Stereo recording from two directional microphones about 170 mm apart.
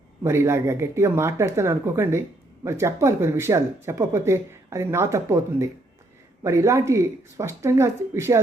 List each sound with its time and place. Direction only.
0.2 s speech: 15° right (ahead or behind)